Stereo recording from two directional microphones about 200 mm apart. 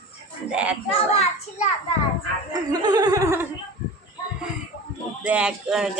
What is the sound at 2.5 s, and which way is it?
Laughter, 20° right (ahead or behind).